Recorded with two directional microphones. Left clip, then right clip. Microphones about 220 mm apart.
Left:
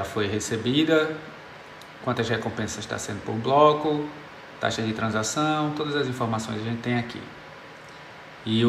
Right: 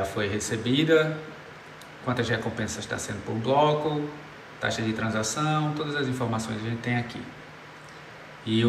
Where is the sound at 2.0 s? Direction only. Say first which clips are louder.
Left 1 dB; 15° left (ahead or behind).